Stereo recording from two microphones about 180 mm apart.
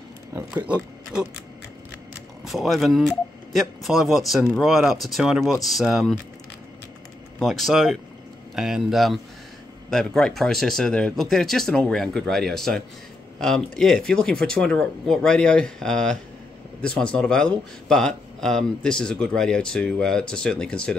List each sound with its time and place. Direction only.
0.7 s speech: 5° right (ahead or behind)
2.4 s speech: centre (ahead or behind)
7.3 s speech: centre (ahead or behind)